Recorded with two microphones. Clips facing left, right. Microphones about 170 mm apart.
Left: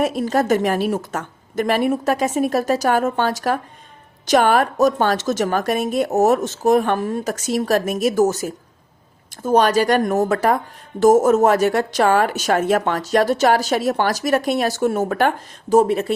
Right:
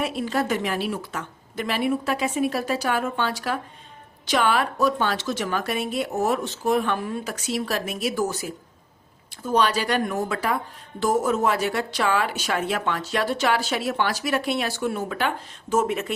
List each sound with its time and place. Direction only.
0.0 s speech: 40° left (ahead or behind)